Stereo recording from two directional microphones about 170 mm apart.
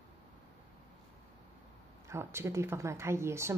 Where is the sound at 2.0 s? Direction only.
15° right (ahead or behind).